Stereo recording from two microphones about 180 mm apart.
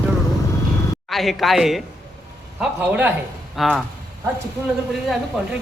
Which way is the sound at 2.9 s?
10° right (ahead or behind).